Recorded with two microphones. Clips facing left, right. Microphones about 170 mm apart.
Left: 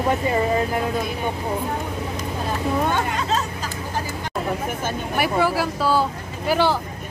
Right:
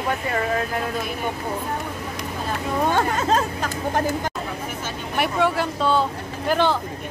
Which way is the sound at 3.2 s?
50° right (ahead or behind).